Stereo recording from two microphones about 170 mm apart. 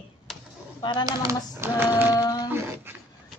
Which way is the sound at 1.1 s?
20° right (ahead or behind).